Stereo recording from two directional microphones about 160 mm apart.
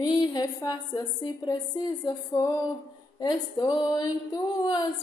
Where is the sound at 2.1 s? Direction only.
25° left (ahead or behind).